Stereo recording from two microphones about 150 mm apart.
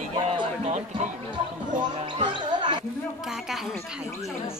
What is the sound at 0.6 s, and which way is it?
Speech, 50° right (ahead or behind).